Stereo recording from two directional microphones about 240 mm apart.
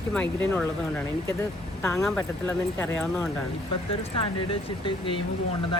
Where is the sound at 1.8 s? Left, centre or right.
Centre.